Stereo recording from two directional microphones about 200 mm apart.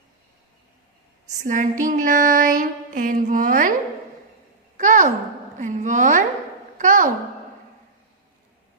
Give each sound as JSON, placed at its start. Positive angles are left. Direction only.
{"t": 1.4, "sound": "female singing", "side_deg": -40}
{"t": 4.8, "sound": "a woman's voice", "side_deg": -40}